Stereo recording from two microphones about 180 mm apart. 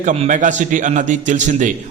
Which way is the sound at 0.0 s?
45° right (ahead or behind).